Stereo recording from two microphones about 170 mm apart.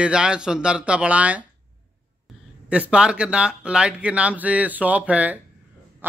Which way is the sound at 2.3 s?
Centre (ahead or behind).